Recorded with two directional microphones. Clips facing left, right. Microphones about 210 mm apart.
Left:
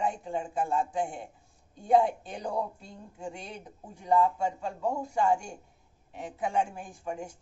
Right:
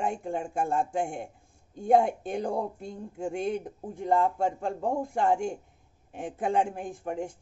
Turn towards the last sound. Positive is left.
turn(degrees=-55)  # may be behind; listen again after turning